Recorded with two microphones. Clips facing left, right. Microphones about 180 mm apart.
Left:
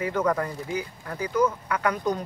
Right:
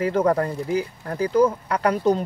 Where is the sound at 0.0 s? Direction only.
30° right (ahead or behind).